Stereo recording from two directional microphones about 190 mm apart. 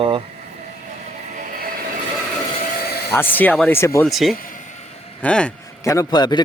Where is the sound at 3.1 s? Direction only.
10° left (ahead or behind).